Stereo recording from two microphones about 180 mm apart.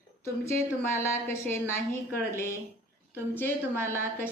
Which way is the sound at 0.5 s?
15° left (ahead or behind).